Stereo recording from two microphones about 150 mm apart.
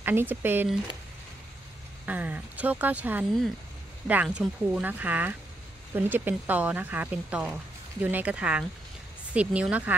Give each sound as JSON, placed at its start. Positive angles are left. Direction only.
{"t": 0.0, "sound": "speech", "side_deg": -15}
{"t": 2.0, "sound": "speech", "side_deg": -10}